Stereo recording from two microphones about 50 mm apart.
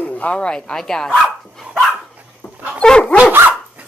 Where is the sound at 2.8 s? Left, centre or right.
Centre.